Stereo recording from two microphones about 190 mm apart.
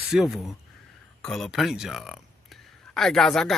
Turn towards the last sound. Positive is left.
turn(degrees=0)  # may be behind; listen again after turning